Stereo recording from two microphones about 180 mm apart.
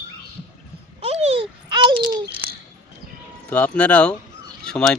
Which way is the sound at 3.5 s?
5° left (ahead or behind).